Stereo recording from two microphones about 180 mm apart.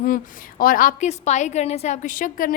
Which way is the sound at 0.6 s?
50° left (ahead or behind).